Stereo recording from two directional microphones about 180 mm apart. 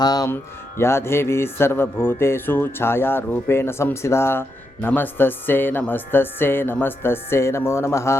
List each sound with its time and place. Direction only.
0.0 s speech: 20° left (ahead or behind)